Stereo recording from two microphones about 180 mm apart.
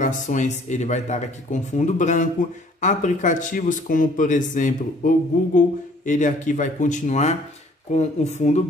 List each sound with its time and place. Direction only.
0.0 s speech: 45° left (ahead or behind)